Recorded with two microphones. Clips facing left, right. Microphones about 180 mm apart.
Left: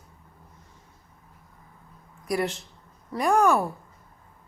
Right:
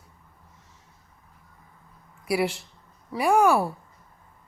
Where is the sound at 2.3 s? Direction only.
10° right (ahead or behind).